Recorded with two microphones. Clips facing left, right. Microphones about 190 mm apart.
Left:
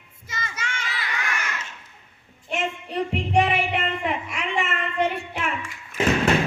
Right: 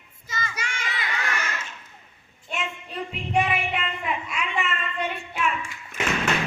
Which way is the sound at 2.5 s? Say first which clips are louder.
Left 5 dB; 75° left (ahead or behind).